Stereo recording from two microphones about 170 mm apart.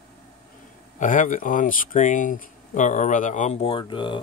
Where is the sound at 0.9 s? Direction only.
50° left (ahead or behind).